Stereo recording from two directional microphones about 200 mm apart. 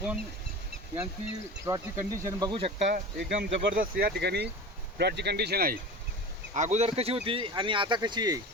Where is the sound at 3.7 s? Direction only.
45° right (ahead or behind).